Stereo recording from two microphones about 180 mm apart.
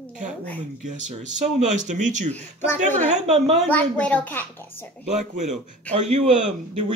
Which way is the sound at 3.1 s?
40° right (ahead or behind).